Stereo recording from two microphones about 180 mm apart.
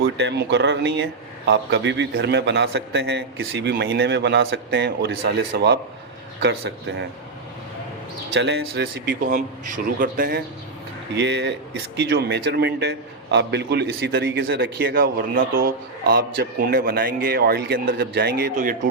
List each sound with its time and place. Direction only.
0.0 s a man's voice: 75° right (ahead or behind)
8.3 s a man's voice: 70° right (ahead or behind); by 10.4 s 55° right (ahead or behind)
11.2 s a man's voice: 75° right (ahead or behind); by 18.8 s 50° right (ahead or behind)